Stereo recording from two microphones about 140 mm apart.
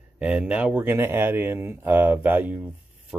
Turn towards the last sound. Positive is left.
turn(degrees=-10)  # may be behind; listen again after turning